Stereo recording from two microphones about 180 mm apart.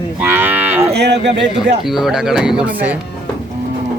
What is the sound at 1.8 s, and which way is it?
Speech, centre (ahead or behind).